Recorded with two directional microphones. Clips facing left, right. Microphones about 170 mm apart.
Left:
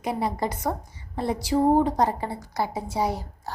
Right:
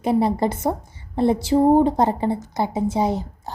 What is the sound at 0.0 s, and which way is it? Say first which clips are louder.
A woman's voice: right 8 dB; 30° right (ahead or behind).